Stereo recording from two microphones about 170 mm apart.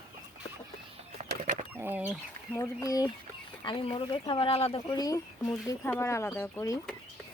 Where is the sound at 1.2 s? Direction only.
45° right (ahead or behind).